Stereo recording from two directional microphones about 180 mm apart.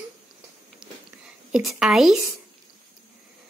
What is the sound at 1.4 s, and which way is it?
Speech, 5° right (ahead or behind).